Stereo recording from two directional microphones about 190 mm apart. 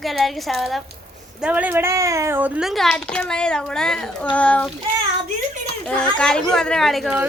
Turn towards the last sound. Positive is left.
turn(degrees=-5)  # may be behind; listen again after turning